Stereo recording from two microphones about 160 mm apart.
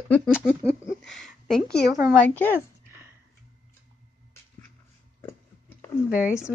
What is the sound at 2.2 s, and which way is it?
Speech, 10° left (ahead or behind).